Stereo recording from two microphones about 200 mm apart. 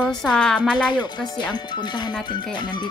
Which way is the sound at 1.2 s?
20° left (ahead or behind).